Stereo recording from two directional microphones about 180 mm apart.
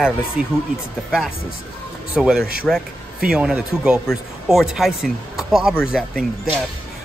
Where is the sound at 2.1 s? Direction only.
5° right (ahead or behind).